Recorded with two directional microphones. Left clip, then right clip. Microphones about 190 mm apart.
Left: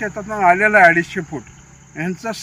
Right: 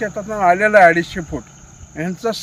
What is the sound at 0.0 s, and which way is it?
Speech, 20° right (ahead or behind).